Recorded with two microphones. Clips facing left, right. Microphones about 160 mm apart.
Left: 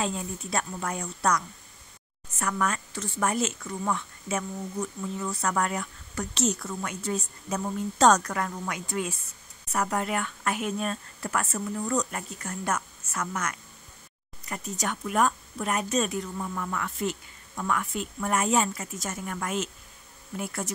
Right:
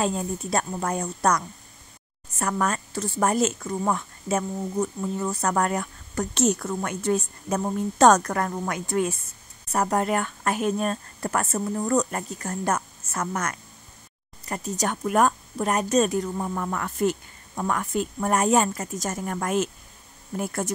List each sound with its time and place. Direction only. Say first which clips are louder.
0.0 s a woman's voice: right 5 dB; 45° right (ahead or behind)